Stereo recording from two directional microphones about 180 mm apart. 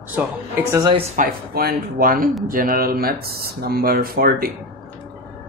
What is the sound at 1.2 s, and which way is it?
Speech, 55° right (ahead or behind).